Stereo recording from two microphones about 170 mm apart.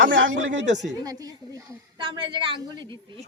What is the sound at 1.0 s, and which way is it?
A woman's voice, 20° right (ahead or behind).